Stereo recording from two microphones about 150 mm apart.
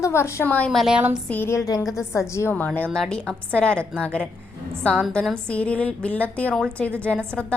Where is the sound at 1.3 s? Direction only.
15° left (ahead or behind).